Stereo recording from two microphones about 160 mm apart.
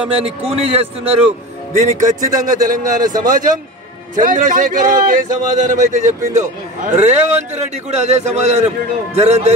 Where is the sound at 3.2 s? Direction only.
55° right (ahead or behind).